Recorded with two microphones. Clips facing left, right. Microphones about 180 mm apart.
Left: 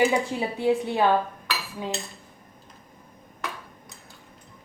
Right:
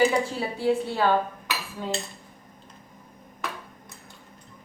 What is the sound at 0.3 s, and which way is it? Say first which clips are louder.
Speech: left 1 dB; 20° left (ahead or behind).